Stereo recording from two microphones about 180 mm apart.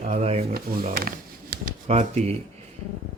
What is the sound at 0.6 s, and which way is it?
Speech, 55° right (ahead or behind).